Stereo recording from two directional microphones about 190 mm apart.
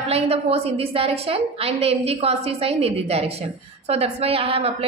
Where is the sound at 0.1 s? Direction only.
30° right (ahead or behind).